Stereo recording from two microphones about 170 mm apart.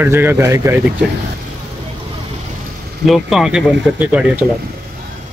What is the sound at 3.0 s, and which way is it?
Speech, centre (ahead or behind).